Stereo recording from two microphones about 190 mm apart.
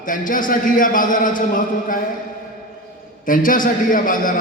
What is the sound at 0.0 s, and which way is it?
A man's voice, 45° left (ahead or behind).